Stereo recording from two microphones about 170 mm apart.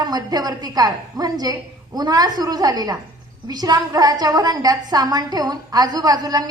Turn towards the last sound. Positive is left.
turn(degrees=-20)  # may be behind; listen again after turning